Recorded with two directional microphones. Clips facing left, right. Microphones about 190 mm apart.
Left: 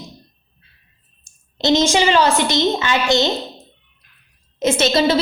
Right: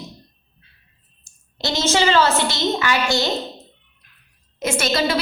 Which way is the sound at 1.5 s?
20° left (ahead or behind).